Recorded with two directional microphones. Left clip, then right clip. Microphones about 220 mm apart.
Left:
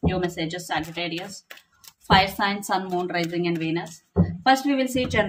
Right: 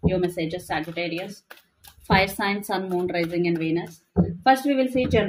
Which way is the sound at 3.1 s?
25° left (ahead or behind).